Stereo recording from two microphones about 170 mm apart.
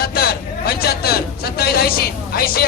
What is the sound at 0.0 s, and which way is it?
A man's voice, 65° left (ahead or behind).